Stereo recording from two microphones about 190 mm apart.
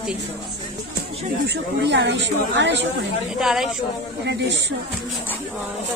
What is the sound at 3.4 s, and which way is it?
Speech, centre (ahead or behind).